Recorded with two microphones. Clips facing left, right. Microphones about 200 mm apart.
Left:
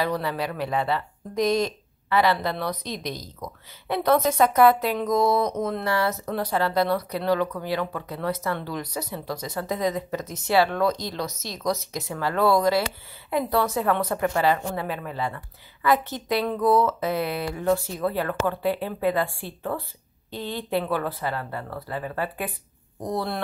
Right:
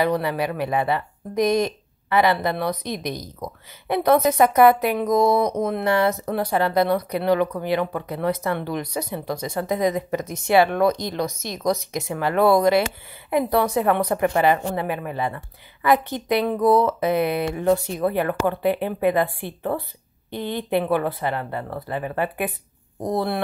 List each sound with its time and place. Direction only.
0.0 s a woman's voice: 15° right (ahead or behind)